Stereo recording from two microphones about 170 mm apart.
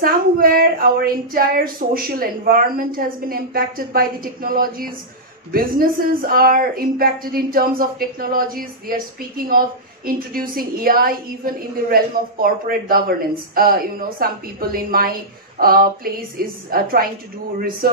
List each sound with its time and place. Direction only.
0.0 s a woman's voice: 60° right (ahead or behind)